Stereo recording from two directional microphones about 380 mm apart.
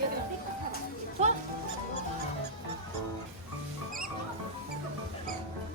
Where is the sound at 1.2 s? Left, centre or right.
Centre.